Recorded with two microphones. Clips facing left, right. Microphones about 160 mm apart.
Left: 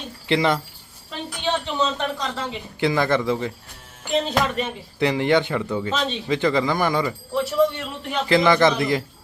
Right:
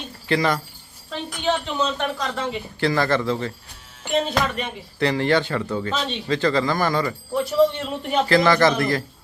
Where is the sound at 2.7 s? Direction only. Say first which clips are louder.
Left 1 dB; 20° left (ahead or behind).